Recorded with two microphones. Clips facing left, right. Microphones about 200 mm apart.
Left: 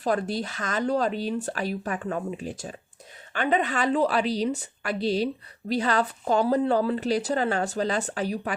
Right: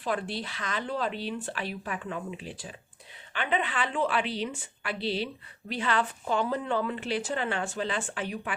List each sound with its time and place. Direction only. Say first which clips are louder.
0.0 s a woman's voice: left 6 dB; 40° left (ahead or behind)